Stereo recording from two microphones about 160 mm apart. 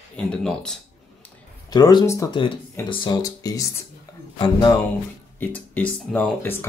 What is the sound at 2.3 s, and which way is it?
Speech, 30° left (ahead or behind).